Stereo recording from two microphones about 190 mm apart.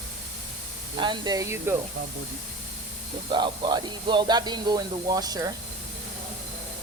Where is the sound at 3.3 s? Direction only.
25° right (ahead or behind).